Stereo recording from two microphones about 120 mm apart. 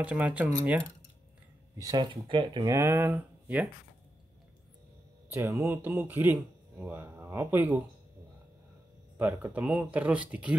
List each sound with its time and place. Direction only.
0.0 s speech: 10° right (ahead or behind)
1.8 s speech: 35° right (ahead or behind)
2.6 s speech: 25° right (ahead or behind)
5.3 s speech: 20° right (ahead or behind)
9.2 s speech: 15° right (ahead or behind)